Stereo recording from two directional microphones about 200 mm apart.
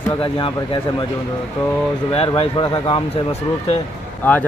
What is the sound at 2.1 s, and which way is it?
Speech, 30° left (ahead or behind).